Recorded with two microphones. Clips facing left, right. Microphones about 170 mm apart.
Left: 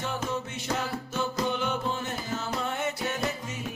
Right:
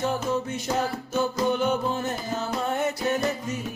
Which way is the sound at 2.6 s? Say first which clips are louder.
Right 5 dB; 40° right (ahead or behind).